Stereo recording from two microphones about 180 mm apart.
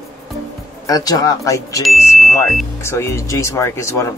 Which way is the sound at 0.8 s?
20° left (ahead or behind).